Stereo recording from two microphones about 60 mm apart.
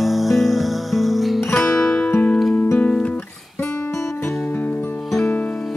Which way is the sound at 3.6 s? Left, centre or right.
Left.